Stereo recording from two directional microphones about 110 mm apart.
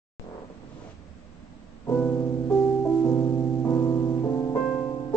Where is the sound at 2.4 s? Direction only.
25° left (ahead or behind).